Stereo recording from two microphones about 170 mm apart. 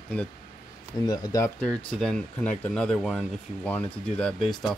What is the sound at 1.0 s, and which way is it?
Speech, 20° left (ahead or behind).